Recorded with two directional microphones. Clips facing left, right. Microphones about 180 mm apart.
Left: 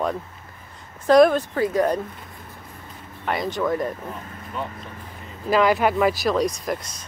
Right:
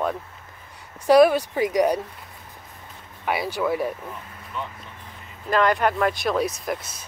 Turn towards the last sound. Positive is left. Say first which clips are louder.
# left 1 dB
turn(degrees=-5)  # may be behind; listen again after turning